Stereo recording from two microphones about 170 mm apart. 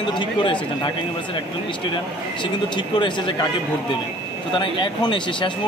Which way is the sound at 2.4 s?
25° left (ahead or behind).